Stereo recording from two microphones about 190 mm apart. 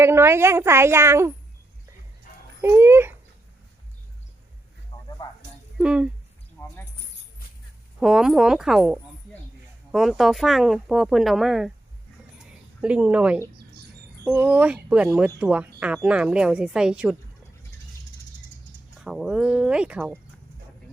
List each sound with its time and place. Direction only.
0.0 s a woman's voice: 15° right (ahead or behind)
2.6 s a woman's voice: 15° right (ahead or behind)
4.9 s a sound: 25° left (ahead or behind)
5.8 s speech: 5° right (ahead or behind)
7.9 s speech: 5° right (ahead or behind)
12.4 s a sound: 5° right (ahead or behind)
14.3 s speech: 10° right (ahead or behind)
19.0 s speech: 5° right (ahead or behind)